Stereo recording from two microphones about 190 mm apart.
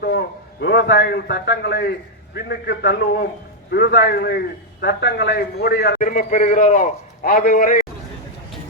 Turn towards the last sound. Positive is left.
turn(degrees=45)  # may be behind; listen again after turning